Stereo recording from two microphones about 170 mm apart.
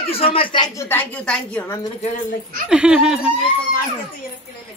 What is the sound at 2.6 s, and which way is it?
Speech, 5° right (ahead or behind).